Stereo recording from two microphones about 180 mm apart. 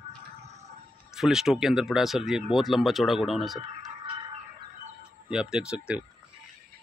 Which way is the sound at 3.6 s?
25° right (ahead or behind).